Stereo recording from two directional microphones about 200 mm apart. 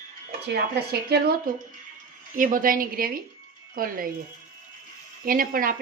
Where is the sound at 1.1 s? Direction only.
50° right (ahead or behind).